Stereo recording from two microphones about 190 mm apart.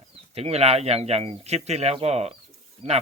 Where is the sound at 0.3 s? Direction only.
30° right (ahead or behind).